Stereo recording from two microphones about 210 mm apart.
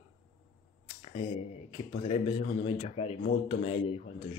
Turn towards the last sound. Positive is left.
turn(degrees=30)  # may be behind; listen again after turning